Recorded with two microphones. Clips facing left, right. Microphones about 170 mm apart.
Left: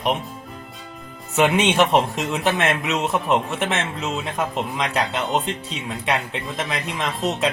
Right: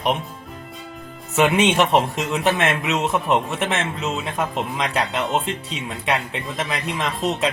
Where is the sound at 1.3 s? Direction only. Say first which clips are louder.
Right 1 dB; centre (ahead or behind).